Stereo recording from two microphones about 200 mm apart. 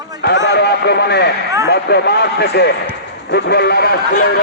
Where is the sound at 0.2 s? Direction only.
60° left (ahead or behind).